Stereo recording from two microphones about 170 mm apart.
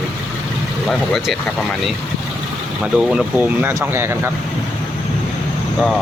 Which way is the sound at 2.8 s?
5° right (ahead or behind).